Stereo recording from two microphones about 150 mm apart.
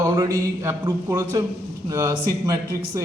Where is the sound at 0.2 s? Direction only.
20° right (ahead or behind).